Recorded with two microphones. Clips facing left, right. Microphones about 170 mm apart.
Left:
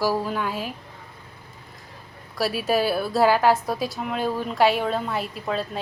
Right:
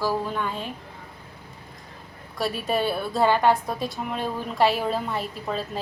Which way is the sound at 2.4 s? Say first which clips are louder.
Left 3 dB; 5° left (ahead or behind).